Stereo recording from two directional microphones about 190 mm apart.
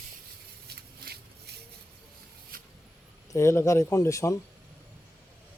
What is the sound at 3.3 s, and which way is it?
Speech, 15° left (ahead or behind).